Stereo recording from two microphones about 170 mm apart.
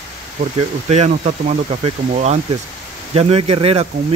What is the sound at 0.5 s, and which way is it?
Speech, 40° right (ahead or behind).